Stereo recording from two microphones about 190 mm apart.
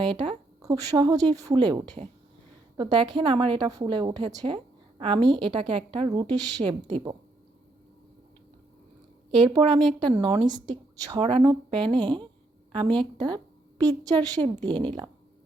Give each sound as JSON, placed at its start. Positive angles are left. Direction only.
{"t": 0.0, "sound": "a woman's voice", "side_deg": -25}
{"t": 9.3, "sound": "a woman's voice", "side_deg": -25}
{"t": 13.1, "sound": "a woman's voice", "side_deg": -20}